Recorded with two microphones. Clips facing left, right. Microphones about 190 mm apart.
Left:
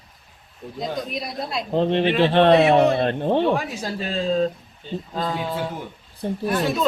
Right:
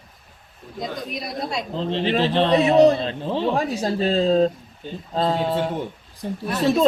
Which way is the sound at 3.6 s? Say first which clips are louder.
Right 6 dB; 30° right (ahead or behind).